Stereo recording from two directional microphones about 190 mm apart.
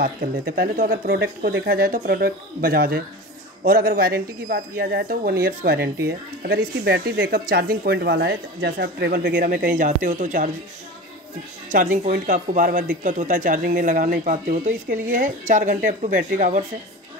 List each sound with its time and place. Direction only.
0.0 s speech: 50° right (ahead or behind)
11.7 s speech: 45° right (ahead or behind)